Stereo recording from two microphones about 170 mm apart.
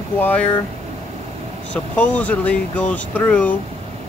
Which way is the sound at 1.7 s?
10° left (ahead or behind).